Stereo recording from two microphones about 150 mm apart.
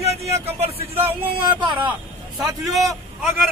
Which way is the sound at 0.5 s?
40° right (ahead or behind).